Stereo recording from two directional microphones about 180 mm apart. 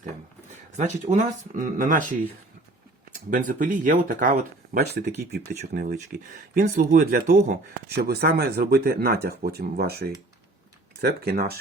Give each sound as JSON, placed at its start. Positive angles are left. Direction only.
{"t": 1.1, "sound": "speech", "side_deg": -45}
{"t": 3.2, "sound": "speech", "side_deg": -45}
{"t": 7.3, "sound": "speech", "side_deg": -40}
{"t": 7.9, "sound": "speech", "side_deg": -60}